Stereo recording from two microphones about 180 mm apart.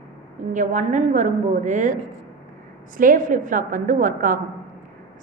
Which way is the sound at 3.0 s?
45° right (ahead or behind).